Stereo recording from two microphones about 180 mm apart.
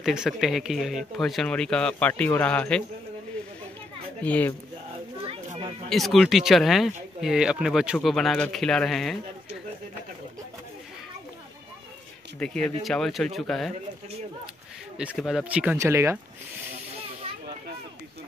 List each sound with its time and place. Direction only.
0.0 s speech: centre (ahead or behind)
4.2 s speech: 10° left (ahead or behind)
5.2 s children playing: 30° right (ahead or behind)
5.9 s speech: centre (ahead or behind)
12.4 s speech: 5° left (ahead or behind)
15.0 s speech: 5° right (ahead or behind)